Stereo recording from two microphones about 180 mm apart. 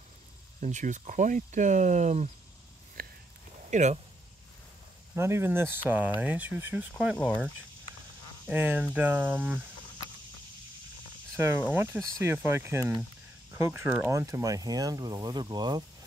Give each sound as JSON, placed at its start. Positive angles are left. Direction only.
{"t": 0.6, "sound": "speech", "side_deg": -45}
{"t": 3.0, "sound": "a sound", "side_deg": -55}
{"t": 3.7, "sound": "speech", "side_deg": -40}
{"t": 5.1, "sound": "speech", "side_deg": -15}
{"t": 7.2, "sound": "speech", "side_deg": 5}
{"t": 8.5, "sound": "speech", "side_deg": -10}
{"t": 11.3, "sound": "speech", "side_deg": -15}